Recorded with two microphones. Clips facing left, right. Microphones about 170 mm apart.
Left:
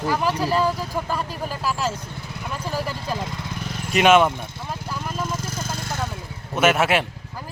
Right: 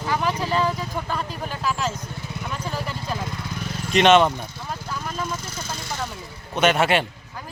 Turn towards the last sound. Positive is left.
turn(degrees=5)  # may be behind; listen again after turning